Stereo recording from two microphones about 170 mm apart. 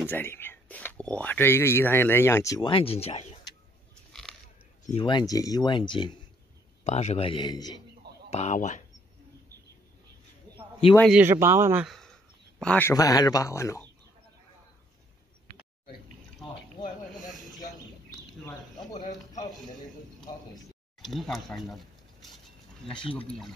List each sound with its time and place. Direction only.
0.0 s speech: 10° left (ahead or behind)
2.7 s a man's voice: 35° left (ahead or behind)
4.1 s biting: centre (ahead or behind)
4.8 s speech: 30° left (ahead or behind)
6.8 s a man's voice: 40° left (ahead or behind); by 7.8 s 25° left (ahead or behind)
8.3 s speech: 40° left (ahead or behind)
11.1 s speech: 10° right (ahead or behind)
11.8 s a man's voice: centre (ahead or behind)
12.9 s speech: 20° left (ahead or behind)
16.8 s snake: 25° left (ahead or behind)
20.2 s a sound: centre (ahead or behind)
23.1 s speech: 5° left (ahead or behind)